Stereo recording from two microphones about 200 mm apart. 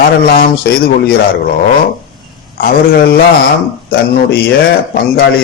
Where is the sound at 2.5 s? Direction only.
45° left (ahead or behind).